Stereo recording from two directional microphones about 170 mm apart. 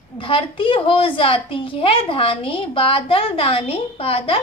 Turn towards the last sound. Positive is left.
turn(degrees=35)  # may be behind; listen again after turning